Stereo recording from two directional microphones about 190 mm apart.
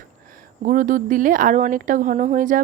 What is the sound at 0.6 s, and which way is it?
Speech, 45° right (ahead or behind).